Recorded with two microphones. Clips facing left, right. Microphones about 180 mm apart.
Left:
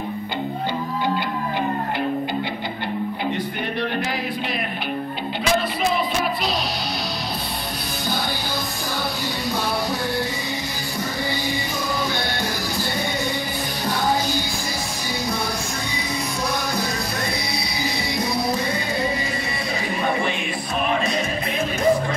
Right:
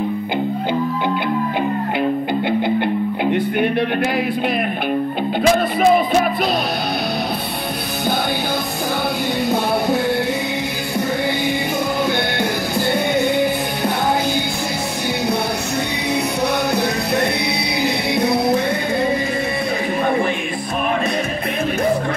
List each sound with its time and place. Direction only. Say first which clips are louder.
2.8 s music: right 6 dB; 60° right (ahead or behind)
5.4 s music: right 7 dB; 50° right (ahead or behind)
12.7 s music: right 8 dB; 55° right (ahead or behind)
17.8 s music: right 7 dB; 60° right (ahead or behind)